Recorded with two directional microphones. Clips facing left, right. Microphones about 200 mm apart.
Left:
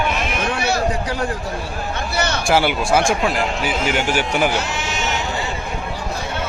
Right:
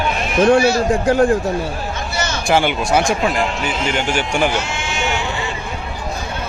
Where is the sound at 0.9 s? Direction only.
50° right (ahead or behind).